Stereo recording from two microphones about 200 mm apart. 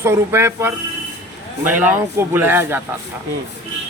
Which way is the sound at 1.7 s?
10° right (ahead or behind).